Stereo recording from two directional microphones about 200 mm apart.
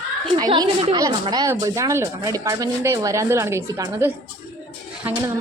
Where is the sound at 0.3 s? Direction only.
20° right (ahead or behind).